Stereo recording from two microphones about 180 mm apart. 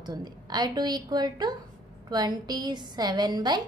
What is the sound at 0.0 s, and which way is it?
A woman's voice, 20° right (ahead or behind).